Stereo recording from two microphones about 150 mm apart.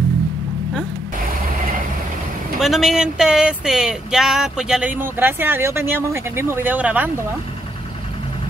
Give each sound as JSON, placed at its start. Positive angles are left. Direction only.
{"t": 2.6, "sound": "speech", "side_deg": 0}